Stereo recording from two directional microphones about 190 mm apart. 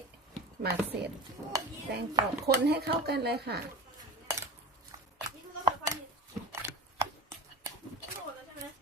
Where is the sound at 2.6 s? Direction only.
55° right (ahead or behind).